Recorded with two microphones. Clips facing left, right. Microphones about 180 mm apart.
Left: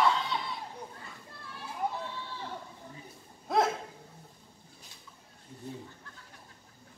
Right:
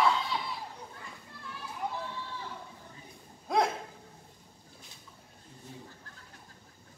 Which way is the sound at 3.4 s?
Centre (ahead or behind).